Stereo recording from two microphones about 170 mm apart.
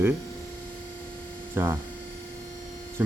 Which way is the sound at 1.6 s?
10° right (ahead or behind).